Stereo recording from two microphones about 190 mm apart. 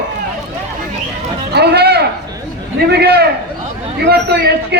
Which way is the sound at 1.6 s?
55° right (ahead or behind).